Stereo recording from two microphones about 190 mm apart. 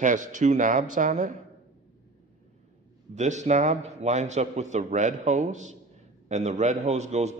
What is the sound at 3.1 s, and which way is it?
A man's voice, 40° right (ahead or behind).